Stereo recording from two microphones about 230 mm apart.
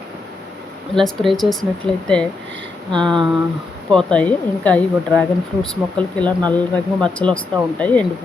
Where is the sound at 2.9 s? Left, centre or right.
Centre.